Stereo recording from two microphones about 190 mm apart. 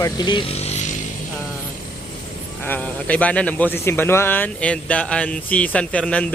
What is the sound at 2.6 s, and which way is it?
Speech, 10° left (ahead or behind).